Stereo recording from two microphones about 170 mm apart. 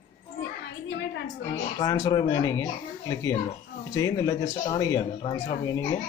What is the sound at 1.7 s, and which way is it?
Speech, 20° left (ahead or behind).